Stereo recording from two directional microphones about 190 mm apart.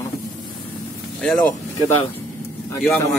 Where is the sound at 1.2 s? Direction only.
5° left (ahead or behind).